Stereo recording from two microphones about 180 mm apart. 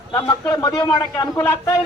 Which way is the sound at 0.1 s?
20° left (ahead or behind).